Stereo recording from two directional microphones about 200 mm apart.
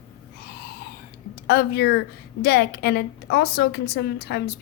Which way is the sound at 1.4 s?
55° left (ahead or behind).